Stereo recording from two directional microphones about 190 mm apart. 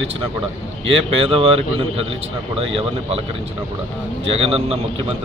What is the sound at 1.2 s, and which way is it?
Speech, 30° right (ahead or behind).